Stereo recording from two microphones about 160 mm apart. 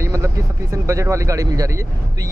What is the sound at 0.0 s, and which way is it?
Speech, 20° right (ahead or behind).